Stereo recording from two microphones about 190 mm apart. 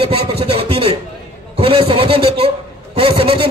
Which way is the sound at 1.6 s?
30° right (ahead or behind).